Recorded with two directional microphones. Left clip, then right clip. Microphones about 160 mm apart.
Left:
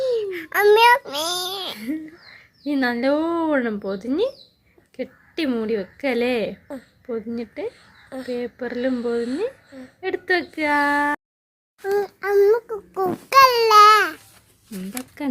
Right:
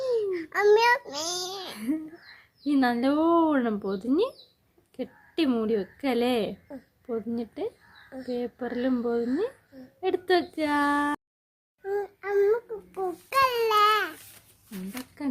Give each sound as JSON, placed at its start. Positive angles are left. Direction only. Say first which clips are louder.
{"t": 0.0, "sound": "a sound", "louder": "left 4 dB", "side_deg": 15}
{"t": 1.7, "sound": "a sound", "louder": "left 2 dB", "side_deg": -15}
{"t": 2.6, "sound": "speech", "louder": "left 4 dB", "side_deg": -15}
{"t": 10.0, "sound": "speech", "louder": "left 2 dB", "side_deg": -15}
{"t": 11.8, "sound": "a child's voice", "louder": "left 8 dB", "side_deg": 30}
{"t": 15.2, "sound": "speech", "louder": "left 5 dB", "side_deg": 25}